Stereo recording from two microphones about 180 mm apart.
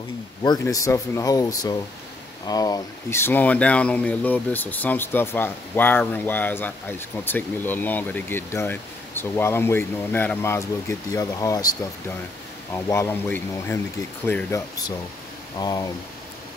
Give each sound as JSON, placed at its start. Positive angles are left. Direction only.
{"t": 0.4, "sound": "speech", "side_deg": 20}
{"t": 12.7, "sound": "speech", "side_deg": 15}